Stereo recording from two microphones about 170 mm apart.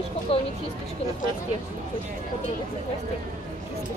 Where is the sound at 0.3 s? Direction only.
35° left (ahead or behind).